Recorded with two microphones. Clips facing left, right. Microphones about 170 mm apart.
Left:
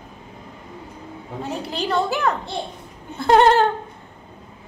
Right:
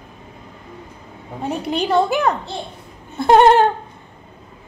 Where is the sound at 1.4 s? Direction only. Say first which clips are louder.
Right 5 dB; 20° right (ahead or behind).